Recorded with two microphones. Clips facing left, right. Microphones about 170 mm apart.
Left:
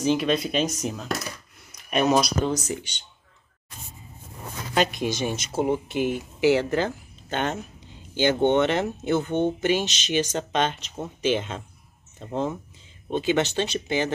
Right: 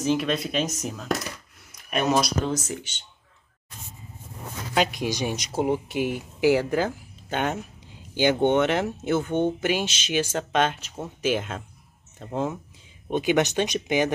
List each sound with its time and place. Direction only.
0.0 s speech: centre (ahead or behind)
4.7 s speech: 10° right (ahead or behind)